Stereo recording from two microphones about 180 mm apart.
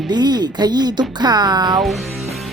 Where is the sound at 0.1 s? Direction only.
25° right (ahead or behind).